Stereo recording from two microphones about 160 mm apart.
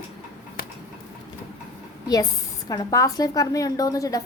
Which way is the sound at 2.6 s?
25° left (ahead or behind).